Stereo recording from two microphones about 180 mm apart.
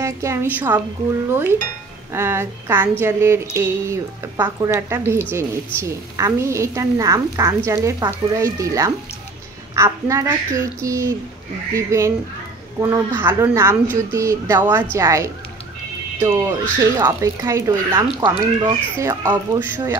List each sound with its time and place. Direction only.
0.0 s a woman's voice: 15° right (ahead or behind)